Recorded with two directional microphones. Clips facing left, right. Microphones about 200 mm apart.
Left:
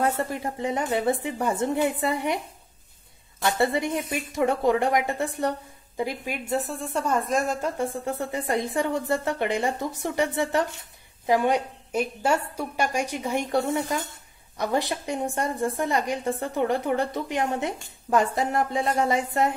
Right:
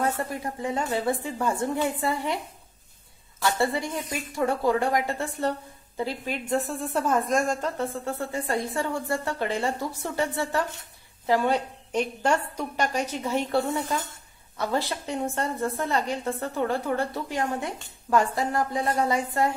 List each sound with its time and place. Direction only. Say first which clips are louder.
0.2 s a woman's voice: left 2 dB; 25° left (ahead or behind)
3.5 s a woman's voice: left 5 dB; 20° left (ahead or behind)